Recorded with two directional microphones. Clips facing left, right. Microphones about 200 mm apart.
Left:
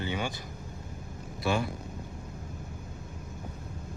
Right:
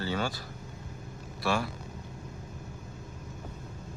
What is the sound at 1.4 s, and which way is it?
Speech, 20° left (ahead or behind).